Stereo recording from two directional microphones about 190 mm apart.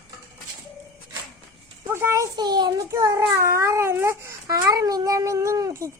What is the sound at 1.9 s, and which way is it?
A child's voice, 15° right (ahead or behind).